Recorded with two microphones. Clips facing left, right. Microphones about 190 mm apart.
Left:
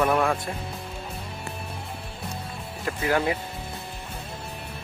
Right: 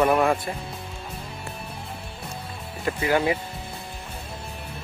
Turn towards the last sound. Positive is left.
turn(degrees=-5)  # may be behind; listen again after turning